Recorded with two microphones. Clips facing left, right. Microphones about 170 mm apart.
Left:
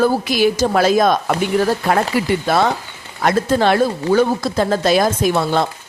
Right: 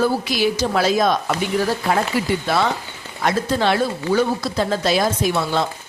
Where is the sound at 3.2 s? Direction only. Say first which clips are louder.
Left 4 dB; 50° left (ahead or behind).